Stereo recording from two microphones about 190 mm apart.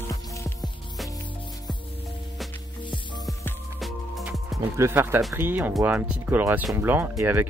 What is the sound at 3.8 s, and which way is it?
Music, centre (ahead or behind).